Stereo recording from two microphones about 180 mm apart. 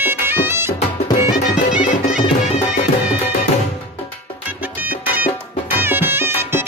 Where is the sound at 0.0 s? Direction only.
10° right (ahead or behind).